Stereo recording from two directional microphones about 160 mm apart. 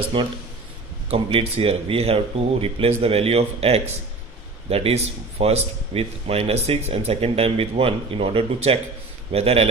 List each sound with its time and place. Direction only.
0.1 s speech: 30° right (ahead or behind)